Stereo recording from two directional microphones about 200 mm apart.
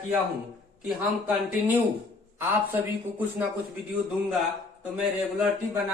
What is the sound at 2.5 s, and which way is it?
Speech, 10° right (ahead or behind).